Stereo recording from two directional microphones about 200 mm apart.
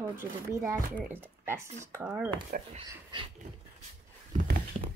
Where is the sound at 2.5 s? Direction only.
45° right (ahead or behind).